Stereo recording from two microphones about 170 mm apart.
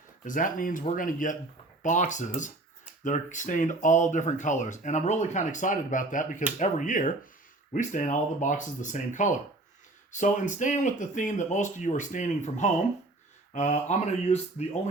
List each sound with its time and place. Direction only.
0.3 s speech: 50° left (ahead or behind)